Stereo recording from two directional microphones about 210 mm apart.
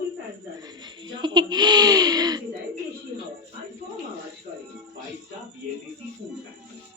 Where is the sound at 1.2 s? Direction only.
20° right (ahead or behind).